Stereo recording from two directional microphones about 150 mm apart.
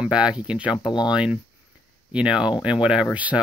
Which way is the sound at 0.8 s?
25° left (ahead or behind).